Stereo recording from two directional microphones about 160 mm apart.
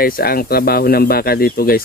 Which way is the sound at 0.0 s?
70° left (ahead or behind).